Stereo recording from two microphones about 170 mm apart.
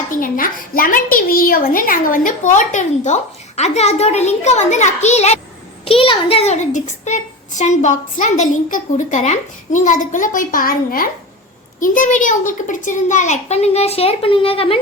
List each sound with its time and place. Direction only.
0.1 s a woman's voice: 55° left (ahead or behind); by 14.8 s 35° left (ahead or behind)